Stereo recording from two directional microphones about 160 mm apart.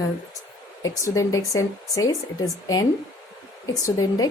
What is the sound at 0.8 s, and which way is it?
Speech, 20° left (ahead or behind).